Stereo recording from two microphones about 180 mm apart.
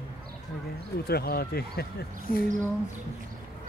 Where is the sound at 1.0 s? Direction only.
60° left (ahead or behind).